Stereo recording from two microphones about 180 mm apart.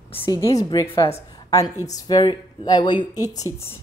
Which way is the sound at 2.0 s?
20° left (ahead or behind).